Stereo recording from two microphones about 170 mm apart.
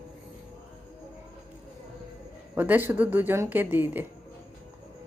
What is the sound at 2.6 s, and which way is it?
Speech, 10° right (ahead or behind).